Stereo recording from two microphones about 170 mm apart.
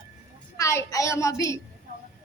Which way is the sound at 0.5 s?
20° left (ahead or behind).